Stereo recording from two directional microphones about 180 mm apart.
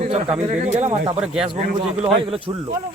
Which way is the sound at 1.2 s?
5° right (ahead or behind).